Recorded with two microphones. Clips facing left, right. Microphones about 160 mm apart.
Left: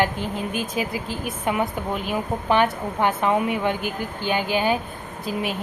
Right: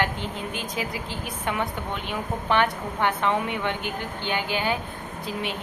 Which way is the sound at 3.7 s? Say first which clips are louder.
Left 4 dB; 25° right (ahead or behind).